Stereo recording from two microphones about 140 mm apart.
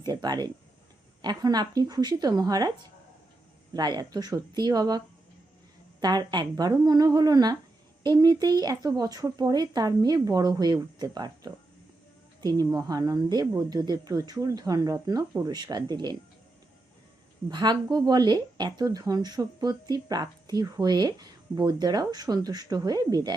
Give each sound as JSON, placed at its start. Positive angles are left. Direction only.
{"t": 0.0, "sound": "a woman's voice", "side_deg": -30}
{"t": 3.8, "sound": "a woman's voice", "side_deg": -30}
{"t": 17.5, "sound": "a woman's voice", "side_deg": -30}